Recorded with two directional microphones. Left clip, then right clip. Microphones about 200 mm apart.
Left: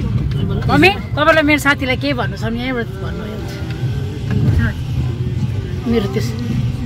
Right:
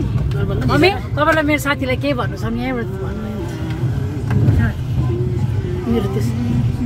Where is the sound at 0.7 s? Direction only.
15° left (ahead or behind).